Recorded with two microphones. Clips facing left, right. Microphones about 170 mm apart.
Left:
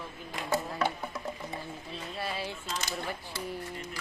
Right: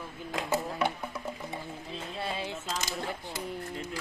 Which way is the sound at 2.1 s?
20° right (ahead or behind).